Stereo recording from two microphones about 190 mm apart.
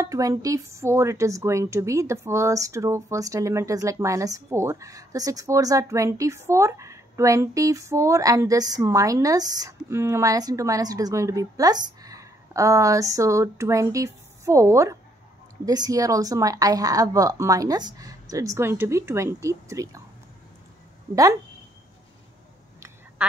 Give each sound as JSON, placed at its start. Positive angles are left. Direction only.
{"t": 0.0, "sound": "a woman's voice", "side_deg": -15}
{"t": 21.1, "sound": "a woman's voice", "side_deg": -20}